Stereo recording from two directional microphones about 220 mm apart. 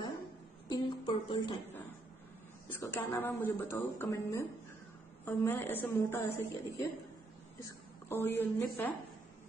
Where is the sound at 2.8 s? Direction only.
10° left (ahead or behind).